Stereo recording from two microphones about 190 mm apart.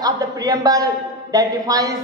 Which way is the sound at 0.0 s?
20° right (ahead or behind).